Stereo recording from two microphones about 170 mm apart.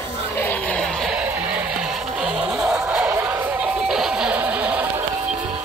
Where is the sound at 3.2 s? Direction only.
10° right (ahead or behind).